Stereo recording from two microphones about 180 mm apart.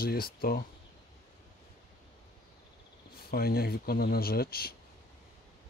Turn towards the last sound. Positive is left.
turn(degrees=55)  # may be behind; listen again after turning